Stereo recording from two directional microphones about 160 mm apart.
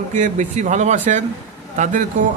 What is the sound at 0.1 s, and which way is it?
A man's voice, 50° right (ahead or behind).